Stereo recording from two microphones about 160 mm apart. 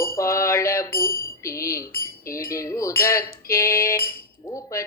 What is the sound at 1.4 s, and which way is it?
Speech, 20° left (ahead or behind).